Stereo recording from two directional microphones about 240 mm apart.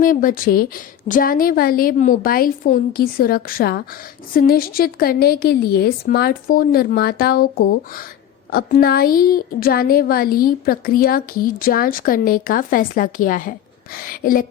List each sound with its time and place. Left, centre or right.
0.0 s a woman's voice: left